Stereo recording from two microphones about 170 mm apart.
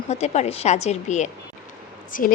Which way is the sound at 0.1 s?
40° left (ahead or behind).